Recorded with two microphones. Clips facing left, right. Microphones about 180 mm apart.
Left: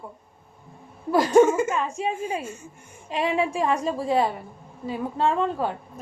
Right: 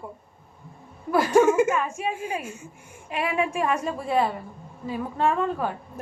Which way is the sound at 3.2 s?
30° left (ahead or behind).